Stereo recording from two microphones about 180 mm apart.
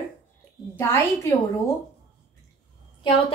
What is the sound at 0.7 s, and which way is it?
Speech, 15° left (ahead or behind).